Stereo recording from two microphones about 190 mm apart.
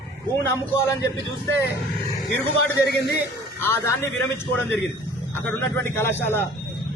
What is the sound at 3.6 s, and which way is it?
Speech, 10° left (ahead or behind).